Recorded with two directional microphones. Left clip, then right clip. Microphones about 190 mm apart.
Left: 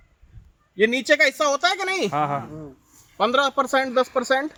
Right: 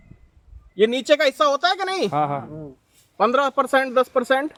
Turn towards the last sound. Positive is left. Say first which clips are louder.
# right 2 dB
turn(degrees=-25)  # may be behind; listen again after turning